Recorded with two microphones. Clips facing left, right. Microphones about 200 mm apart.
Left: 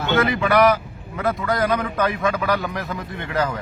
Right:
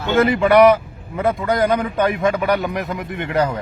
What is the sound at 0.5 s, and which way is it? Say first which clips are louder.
A man's voice: right 5 dB; 25° right (ahead or behind).